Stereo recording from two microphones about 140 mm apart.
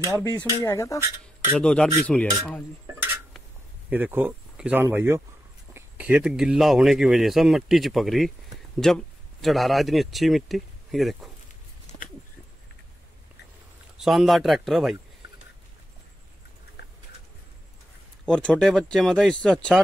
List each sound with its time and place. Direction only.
0.6 s speech: 20° left (ahead or behind)
1.6 s speech: 5° left (ahead or behind)
2.9 s dishes: 15° right (ahead or behind)
3.9 s speech: 10° right (ahead or behind)
11.9 s a sound: 30° left (ahead or behind)
13.9 s speech: centre (ahead or behind)
18.2 s speech: 5° left (ahead or behind)